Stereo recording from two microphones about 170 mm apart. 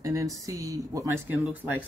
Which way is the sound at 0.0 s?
20° right (ahead or behind).